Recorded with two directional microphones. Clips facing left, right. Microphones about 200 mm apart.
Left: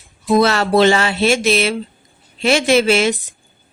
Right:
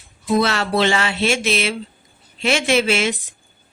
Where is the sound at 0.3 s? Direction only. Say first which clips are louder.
Left 5 dB; 40° left (ahead or behind).